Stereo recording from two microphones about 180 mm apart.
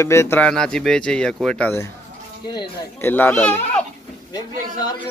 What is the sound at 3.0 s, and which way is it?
Speech, 10° left (ahead or behind).